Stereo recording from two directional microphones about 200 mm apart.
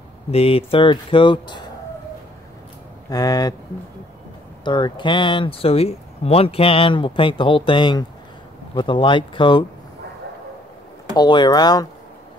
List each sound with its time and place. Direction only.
0.3 s speech: 30° left (ahead or behind)
3.1 s speech: 20° left (ahead or behind)
4.6 s speech: 25° left (ahead or behind)
11.1 s speech: 20° left (ahead or behind)